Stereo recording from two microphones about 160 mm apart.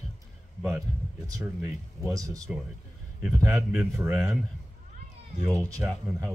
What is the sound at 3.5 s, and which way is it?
Speech, 5° right (ahead or behind).